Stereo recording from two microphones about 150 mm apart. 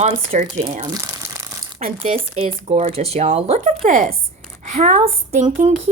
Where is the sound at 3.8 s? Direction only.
70° right (ahead or behind).